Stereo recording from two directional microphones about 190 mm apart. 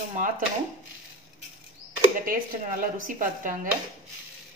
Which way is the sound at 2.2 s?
45° right (ahead or behind).